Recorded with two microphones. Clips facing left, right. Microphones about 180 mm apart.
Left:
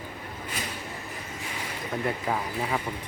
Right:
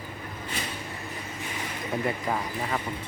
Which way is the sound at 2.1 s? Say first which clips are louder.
Left 2 dB; 5° left (ahead or behind).